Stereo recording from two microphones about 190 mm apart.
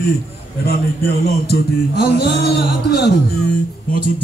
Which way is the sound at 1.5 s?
55° left (ahead or behind).